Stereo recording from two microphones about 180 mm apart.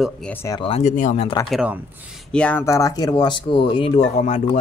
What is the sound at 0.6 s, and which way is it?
Speech, 30° left (ahead or behind).